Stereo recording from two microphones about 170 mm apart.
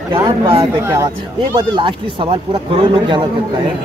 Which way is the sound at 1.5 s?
30° right (ahead or behind).